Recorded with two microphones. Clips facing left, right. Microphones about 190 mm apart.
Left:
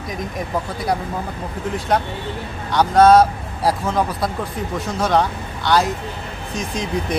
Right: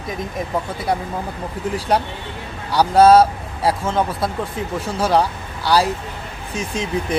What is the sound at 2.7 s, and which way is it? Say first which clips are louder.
Speech: right 1 dB; 5° right (ahead or behind).